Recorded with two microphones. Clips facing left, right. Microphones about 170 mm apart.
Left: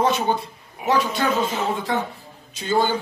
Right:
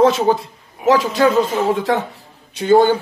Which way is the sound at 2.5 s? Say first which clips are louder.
Right 9 dB; 60° right (ahead or behind).